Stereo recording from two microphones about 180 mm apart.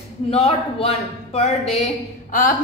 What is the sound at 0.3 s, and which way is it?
A man's voice, 35° left (ahead or behind).